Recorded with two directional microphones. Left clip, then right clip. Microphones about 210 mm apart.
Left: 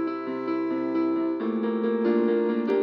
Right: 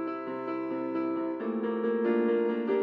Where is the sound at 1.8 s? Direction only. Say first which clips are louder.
Left 3 dB; 40° left (ahead or behind).